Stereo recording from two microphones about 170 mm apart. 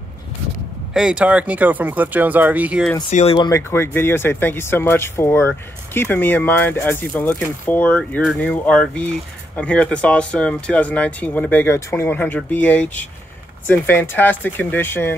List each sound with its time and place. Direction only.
0.9 s speech: 5° right (ahead or behind)
3.1 s speech: 45° left (ahead or behind)
3.3 s speech: 20° left (ahead or behind)